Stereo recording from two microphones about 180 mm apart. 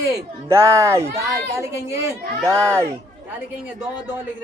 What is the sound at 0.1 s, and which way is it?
Speech, 15° right (ahead or behind).